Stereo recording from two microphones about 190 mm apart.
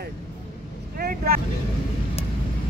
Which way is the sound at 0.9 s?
50° right (ahead or behind).